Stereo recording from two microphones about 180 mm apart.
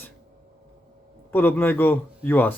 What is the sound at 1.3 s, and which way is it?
Speech, 10° left (ahead or behind).